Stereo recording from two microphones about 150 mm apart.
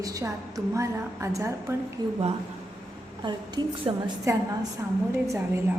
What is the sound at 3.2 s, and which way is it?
Speech, 30° right (ahead or behind).